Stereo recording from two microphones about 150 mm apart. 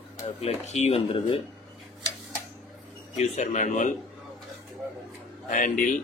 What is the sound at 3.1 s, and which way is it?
Speech, 55° left (ahead or behind).